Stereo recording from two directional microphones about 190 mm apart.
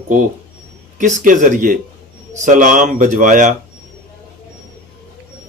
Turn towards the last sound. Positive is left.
turn(degrees=-45)  # may be behind; listen again after turning